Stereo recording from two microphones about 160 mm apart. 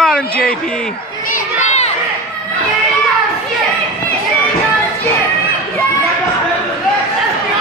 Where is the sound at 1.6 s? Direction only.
45° left (ahead or behind).